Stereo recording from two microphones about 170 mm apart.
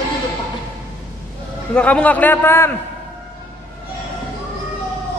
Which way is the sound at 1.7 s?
5° left (ahead or behind).